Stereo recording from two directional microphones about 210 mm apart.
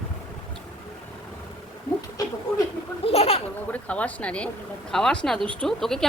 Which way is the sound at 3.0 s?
30° left (ahead or behind).